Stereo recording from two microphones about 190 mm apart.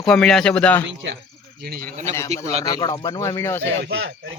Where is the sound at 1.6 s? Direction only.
55° right (ahead or behind).